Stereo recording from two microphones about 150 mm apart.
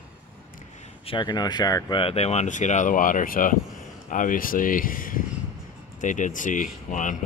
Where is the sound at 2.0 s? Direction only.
40° left (ahead or behind).